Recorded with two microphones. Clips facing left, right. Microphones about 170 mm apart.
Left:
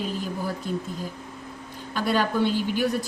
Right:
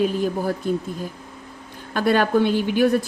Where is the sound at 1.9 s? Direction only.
55° right (ahead or behind).